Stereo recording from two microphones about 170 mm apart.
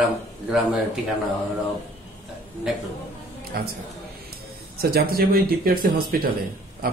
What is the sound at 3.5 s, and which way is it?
Speech, 65° right (ahead or behind).